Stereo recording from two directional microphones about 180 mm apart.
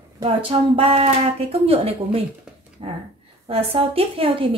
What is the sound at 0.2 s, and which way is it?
Speech, 30° right (ahead or behind).